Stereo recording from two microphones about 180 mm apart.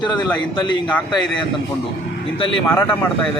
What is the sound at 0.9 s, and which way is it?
Speech, 5° left (ahead or behind).